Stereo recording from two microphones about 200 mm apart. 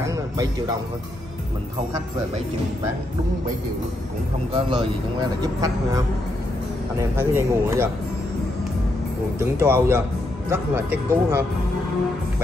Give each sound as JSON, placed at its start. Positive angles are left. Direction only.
{"t": 0.0, "sound": "music", "side_deg": -15}
{"t": 4.6, "sound": "speech", "side_deg": -25}
{"t": 9.4, "sound": "speech", "side_deg": -10}